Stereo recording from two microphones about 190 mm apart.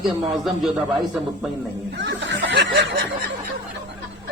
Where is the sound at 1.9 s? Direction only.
75° right (ahead or behind).